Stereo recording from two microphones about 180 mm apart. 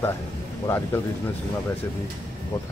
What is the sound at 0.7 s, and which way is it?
Speech, 15° left (ahead or behind).